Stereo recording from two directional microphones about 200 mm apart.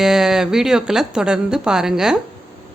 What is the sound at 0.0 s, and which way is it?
Speech, centre (ahead or behind).